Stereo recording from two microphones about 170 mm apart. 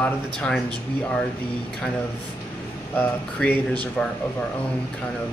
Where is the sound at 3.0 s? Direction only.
10° left (ahead or behind).